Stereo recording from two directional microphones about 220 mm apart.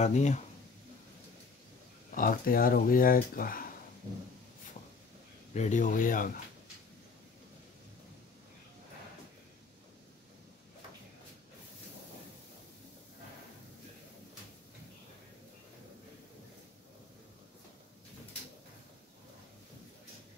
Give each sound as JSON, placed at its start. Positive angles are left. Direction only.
{"t": 0.0, "sound": "speech", "side_deg": 30}
{"t": 2.1, "sound": "speech", "side_deg": 40}
{"t": 5.5, "sound": "speech", "side_deg": 35}